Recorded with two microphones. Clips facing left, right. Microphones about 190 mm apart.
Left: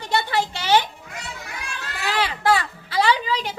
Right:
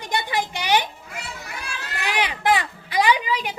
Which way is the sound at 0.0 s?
15° right (ahead or behind).